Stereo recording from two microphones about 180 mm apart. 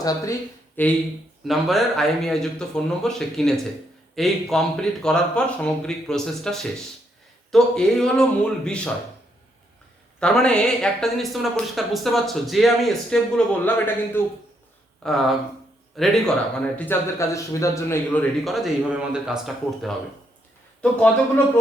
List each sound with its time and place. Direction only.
0.0 s a man's voice: 20° left (ahead or behind)
1.5 s speech: centre (ahead or behind)
10.2 s speech: 5° left (ahead or behind)
15.0 s speech: centre (ahead or behind)
16.7 s a man's voice: 10° left (ahead or behind)
20.8 s a man's voice: 10° left (ahead or behind)